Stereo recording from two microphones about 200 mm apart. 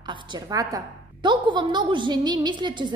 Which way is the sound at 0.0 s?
25° right (ahead or behind).